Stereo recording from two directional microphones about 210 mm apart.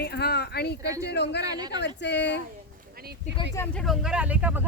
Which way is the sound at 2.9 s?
45° right (ahead or behind).